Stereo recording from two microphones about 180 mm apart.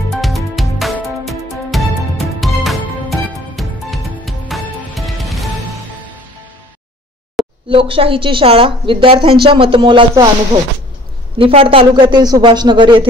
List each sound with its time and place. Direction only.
0.1 s music: centre (ahead or behind)
7.6 s a woman's voice: 30° right (ahead or behind)
11.3 s a woman's voice: 30° right (ahead or behind)